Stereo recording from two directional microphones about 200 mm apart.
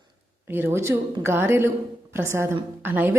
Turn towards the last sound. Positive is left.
turn(degrees=-10)  # may be behind; listen again after turning